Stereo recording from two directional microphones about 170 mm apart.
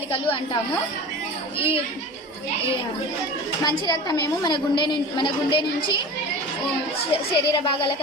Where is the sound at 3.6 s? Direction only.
25° left (ahead or behind).